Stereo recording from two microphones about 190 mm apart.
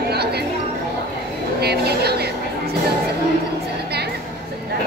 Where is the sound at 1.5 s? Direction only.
60° right (ahead or behind).